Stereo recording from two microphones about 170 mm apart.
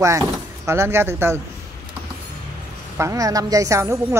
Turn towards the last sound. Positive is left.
turn(degrees=-15)  # may be behind; listen again after turning